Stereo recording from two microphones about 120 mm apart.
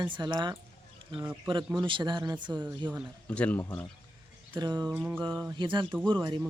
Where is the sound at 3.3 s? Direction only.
10° left (ahead or behind).